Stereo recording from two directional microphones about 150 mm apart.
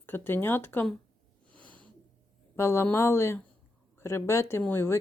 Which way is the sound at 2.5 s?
15° left (ahead or behind).